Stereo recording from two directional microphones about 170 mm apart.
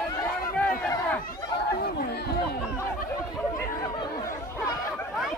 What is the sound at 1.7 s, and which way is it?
Chatter, 65° left (ahead or behind).